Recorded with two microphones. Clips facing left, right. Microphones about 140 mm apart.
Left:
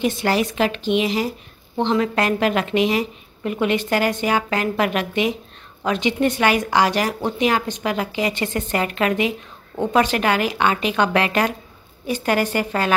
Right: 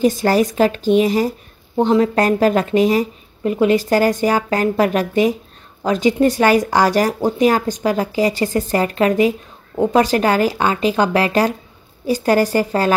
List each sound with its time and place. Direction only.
0.0 s speech: 40° right (ahead or behind)